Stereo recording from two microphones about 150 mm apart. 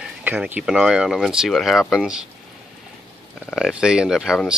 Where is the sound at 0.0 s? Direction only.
10° right (ahead or behind).